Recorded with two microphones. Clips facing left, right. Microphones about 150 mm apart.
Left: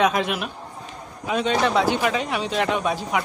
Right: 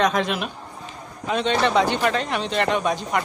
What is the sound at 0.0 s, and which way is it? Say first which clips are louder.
Speech: even; 5° left (ahead or behind).